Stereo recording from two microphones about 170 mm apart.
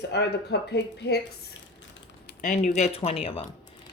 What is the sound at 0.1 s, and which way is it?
Speech, 75° left (ahead or behind).